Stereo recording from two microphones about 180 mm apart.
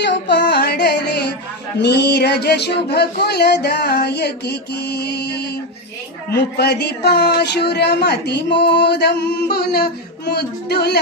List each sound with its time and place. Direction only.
0.0 s music: 75° left (ahead or behind)
1.8 s a woman's voice: 65° left (ahead or behind)
6.6 s a woman's voice: 65° left (ahead or behind)